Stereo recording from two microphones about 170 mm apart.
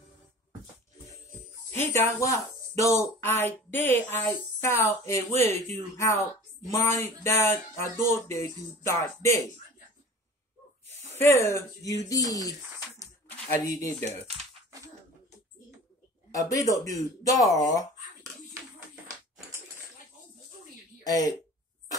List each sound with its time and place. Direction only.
1.7 s a woman's voice: 15° left (ahead or behind)
11.1 s a woman's voice: 15° left (ahead or behind)
13.0 s a sound: 20° left (ahead or behind)
13.7 s speech: 20° left (ahead or behind)
16.3 s speech: 20° left (ahead or behind)
21.0 s speech: 20° left (ahead or behind)